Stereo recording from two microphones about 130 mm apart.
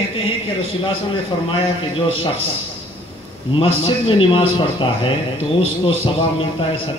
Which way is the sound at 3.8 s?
45° left (ahead or behind).